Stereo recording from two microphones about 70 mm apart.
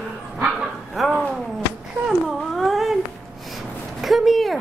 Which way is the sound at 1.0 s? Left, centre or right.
Centre.